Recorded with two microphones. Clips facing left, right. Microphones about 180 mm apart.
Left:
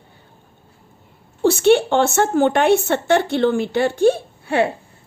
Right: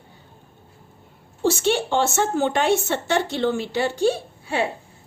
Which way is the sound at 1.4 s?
60° left (ahead or behind).